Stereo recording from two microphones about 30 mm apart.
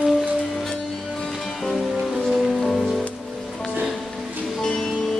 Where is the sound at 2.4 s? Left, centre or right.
Centre.